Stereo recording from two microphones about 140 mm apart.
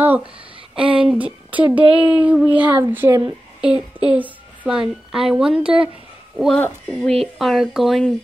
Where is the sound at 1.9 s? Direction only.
10° right (ahead or behind).